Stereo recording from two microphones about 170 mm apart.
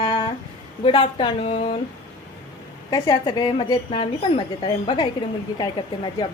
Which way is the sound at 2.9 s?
20° left (ahead or behind).